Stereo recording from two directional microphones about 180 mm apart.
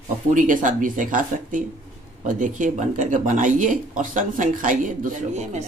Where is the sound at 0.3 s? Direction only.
45° right (ahead or behind).